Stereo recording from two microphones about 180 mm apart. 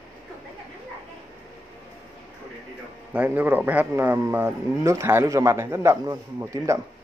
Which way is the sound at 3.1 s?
10° right (ahead or behind).